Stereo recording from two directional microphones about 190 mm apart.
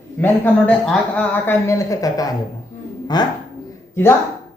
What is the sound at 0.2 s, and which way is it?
A man's voice, 10° left (ahead or behind).